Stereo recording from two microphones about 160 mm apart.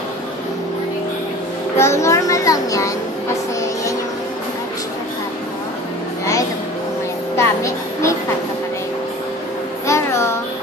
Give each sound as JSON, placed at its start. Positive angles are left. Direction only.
{"t": 1.8, "sound": "a child's voice", "side_deg": 20}
{"t": 7.3, "sound": "music", "side_deg": 20}
{"t": 9.8, "sound": "a sound", "side_deg": 15}